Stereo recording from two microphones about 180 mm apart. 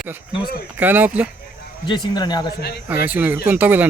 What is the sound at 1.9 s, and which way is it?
Speech, 25° left (ahead or behind).